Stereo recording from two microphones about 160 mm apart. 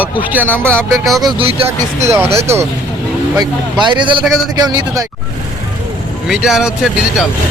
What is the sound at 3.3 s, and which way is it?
A man's voice, 25° right (ahead or behind).